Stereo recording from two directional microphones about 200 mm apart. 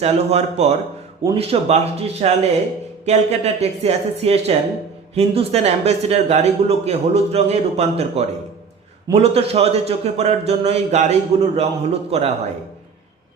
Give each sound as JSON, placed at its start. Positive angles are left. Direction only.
{"t": 0.0, "sound": "a man's voice", "side_deg": -30}